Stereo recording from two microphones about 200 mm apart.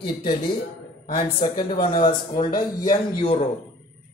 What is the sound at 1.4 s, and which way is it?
Speech, 20° left (ahead or behind).